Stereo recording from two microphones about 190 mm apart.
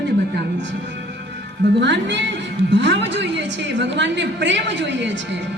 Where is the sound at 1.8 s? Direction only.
70° right (ahead or behind).